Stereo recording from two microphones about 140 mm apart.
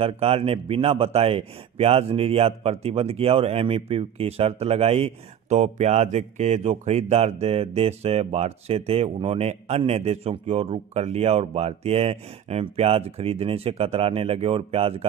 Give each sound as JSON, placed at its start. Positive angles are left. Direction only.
{"t": 0.0, "sound": "speech", "side_deg": -45}